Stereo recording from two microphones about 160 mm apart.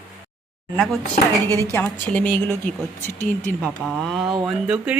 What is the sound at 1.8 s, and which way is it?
Speech, 10° left (ahead or behind).